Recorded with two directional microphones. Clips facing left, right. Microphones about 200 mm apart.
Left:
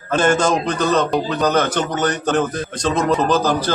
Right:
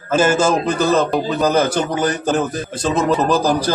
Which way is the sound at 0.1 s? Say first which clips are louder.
Right 1 dB; 5° right (ahead or behind).